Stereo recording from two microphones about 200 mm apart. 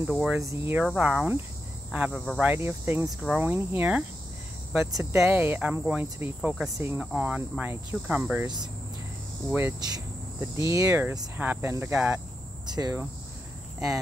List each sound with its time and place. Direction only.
0.1 s speech: 5° right (ahead or behind)
0.4 s cricket: 15° right (ahead or behind)
5.2 s cricket: 10° right (ahead or behind)
9.5 s cricket: 10° right (ahead or behind)
12.6 s speech: 20° right (ahead or behind)